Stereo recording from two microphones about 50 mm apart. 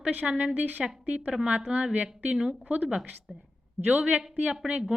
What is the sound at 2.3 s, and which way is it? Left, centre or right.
Speech, centre.